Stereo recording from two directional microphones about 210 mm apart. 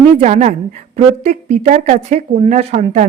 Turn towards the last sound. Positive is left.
turn(degrees=-35)  # may be behind; listen again after turning